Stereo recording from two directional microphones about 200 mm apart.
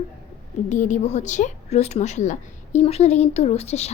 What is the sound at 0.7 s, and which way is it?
A woman's voice, 40° left (ahead or behind).